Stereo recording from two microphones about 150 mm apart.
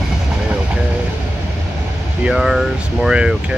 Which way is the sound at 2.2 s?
Centre (ahead or behind).